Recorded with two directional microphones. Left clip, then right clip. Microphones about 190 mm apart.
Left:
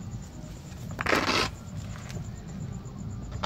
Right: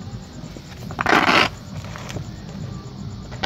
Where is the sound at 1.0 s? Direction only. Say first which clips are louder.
Right 10 dB; 35° right (ahead or behind).